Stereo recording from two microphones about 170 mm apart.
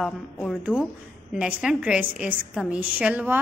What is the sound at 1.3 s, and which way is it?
A woman's voice, 5° right (ahead or behind).